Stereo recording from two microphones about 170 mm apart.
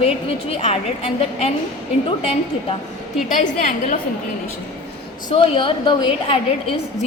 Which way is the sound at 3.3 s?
45° left (ahead or behind).